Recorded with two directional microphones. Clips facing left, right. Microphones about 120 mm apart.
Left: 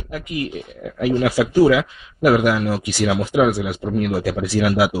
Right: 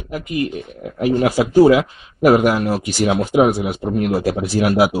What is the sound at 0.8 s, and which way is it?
Speech, 35° right (ahead or behind).